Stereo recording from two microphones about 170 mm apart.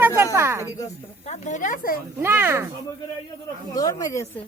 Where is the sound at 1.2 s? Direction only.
40° left (ahead or behind).